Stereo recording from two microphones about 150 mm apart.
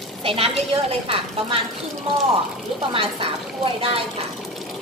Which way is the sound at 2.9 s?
40° right (ahead or behind).